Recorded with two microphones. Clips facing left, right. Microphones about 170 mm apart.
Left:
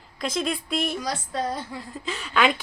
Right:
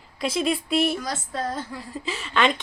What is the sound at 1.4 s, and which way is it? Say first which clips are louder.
Speech: even; 15° left (ahead or behind).